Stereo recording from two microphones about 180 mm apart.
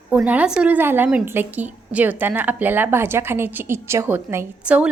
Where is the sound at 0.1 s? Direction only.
10° right (ahead or behind).